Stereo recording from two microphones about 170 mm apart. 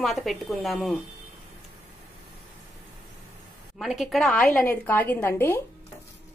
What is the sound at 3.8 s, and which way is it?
A woman's voice, centre (ahead or behind).